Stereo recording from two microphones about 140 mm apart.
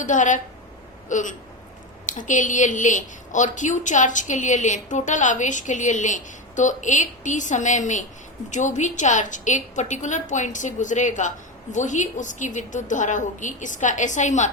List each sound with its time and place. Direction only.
0.0 s a woman's voice: 65° left (ahead or behind)